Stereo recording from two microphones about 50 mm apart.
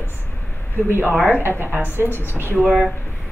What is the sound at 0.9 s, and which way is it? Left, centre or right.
A woman's voice, right.